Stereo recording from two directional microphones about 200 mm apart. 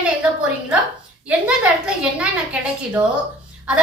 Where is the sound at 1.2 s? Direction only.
5° right (ahead or behind).